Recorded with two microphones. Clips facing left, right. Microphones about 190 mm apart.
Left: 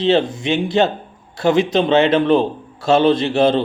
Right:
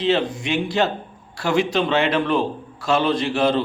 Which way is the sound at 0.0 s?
25° left (ahead or behind).